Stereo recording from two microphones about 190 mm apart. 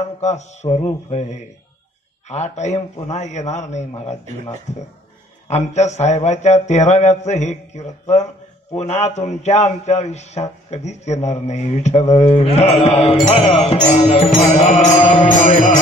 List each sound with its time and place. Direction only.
0.2 s a man's voice: 35° left (ahead or behind)
2.2 s a man's voice: 35° left (ahead or behind)
14.6 s mantra: 35° left (ahead or behind)